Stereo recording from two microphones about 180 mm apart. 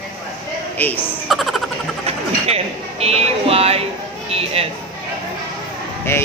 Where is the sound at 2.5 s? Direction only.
35° right (ahead or behind).